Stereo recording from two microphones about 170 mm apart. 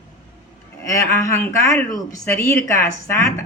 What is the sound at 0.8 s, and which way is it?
Speech, 15° left (ahead or behind).